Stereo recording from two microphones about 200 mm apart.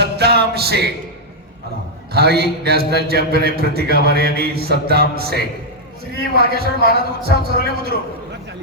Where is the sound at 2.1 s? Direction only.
50° right (ahead or behind).